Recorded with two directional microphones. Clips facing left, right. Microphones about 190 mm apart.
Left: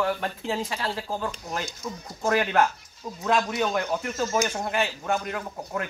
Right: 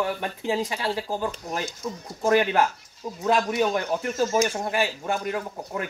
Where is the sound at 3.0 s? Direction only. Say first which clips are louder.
Right 2 dB; 15° right (ahead or behind).